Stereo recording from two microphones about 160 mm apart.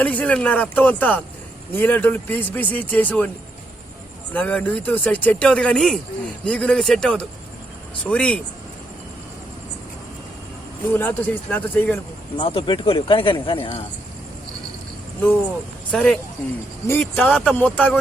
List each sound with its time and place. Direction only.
0.0 s speech: 10° left (ahead or behind)
4.3 s speech: 10° left (ahead or behind)
10.9 s speech: 10° left (ahead or behind)
12.4 s speech: 35° left (ahead or behind)
15.9 s speech: 5° left (ahead or behind)
16.8 s speech: 15° left (ahead or behind)